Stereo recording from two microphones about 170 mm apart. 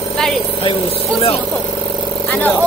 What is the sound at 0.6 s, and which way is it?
Speech, 35° left (ahead or behind).